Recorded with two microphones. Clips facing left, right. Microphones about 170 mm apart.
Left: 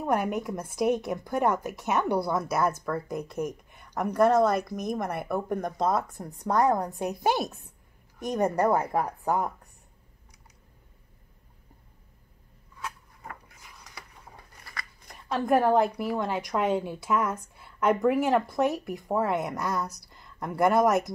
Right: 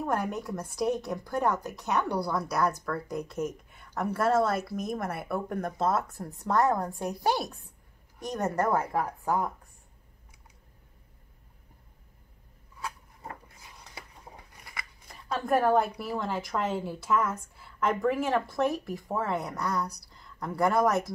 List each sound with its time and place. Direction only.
0.0 s a woman's voice: 20° left (ahead or behind)
1.7 s a woman's voice: centre (ahead or behind)
2.0 s a woman's voice: 20° left (ahead or behind)
2.4 s a woman's voice: 5° left (ahead or behind)
6.4 s a woman's voice: 20° left (ahead or behind)
13.9 s scissors: 20° right (ahead or behind)
15.0 s a woman's voice: centre (ahead or behind)
17.1 s speech: 15° left (ahead or behind)
18.1 s a woman's voice: centre (ahead or behind)